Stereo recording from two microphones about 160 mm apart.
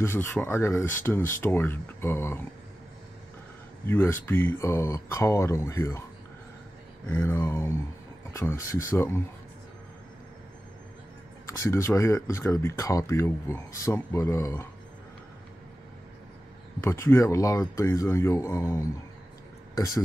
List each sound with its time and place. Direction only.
0.0 s speech: 15° left (ahead or behind)
3.8 s speech: 15° left (ahead or behind)
7.1 s speech: 15° left (ahead or behind)
11.6 s speech: 15° left (ahead or behind)
16.8 s speech: 15° left (ahead or behind)